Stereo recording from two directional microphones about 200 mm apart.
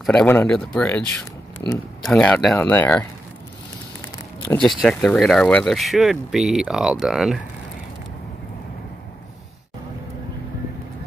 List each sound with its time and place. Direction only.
0.0 s speech: 5° left (ahead or behind)
2.0 s speech: 5° left (ahead or behind)
4.0 s a sound: 15° left (ahead or behind)
4.6 s speech: centre (ahead or behind)